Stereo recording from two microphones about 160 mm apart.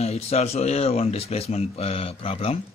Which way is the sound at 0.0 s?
40° left (ahead or behind).